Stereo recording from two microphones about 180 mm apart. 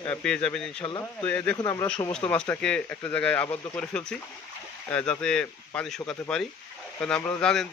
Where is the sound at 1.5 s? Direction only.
20° left (ahead or behind).